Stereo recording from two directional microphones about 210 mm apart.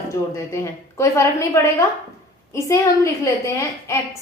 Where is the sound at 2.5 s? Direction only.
15° left (ahead or behind).